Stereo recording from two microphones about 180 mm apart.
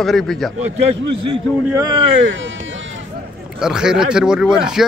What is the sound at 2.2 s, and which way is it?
Speech, 90° right.